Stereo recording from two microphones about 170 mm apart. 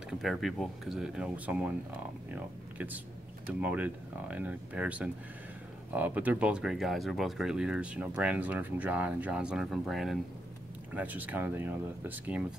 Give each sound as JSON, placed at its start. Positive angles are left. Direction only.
{"t": 0.2, "sound": "speech", "side_deg": 0}